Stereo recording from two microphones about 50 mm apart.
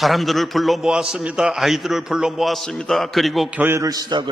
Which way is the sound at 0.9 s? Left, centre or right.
Centre.